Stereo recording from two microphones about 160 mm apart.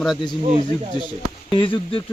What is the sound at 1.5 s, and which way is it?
Speech, 30° left (ahead or behind).